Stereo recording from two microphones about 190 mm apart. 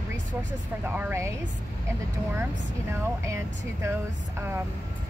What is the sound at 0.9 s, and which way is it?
Speech, 10° right (ahead or behind).